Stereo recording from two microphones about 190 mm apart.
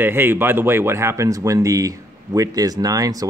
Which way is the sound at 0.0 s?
10° right (ahead or behind).